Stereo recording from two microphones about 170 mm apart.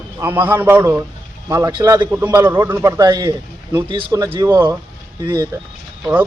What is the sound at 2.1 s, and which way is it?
A man's voice, 15° right (ahead or behind).